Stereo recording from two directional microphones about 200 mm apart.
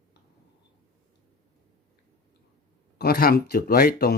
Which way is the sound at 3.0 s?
50° left (ahead or behind).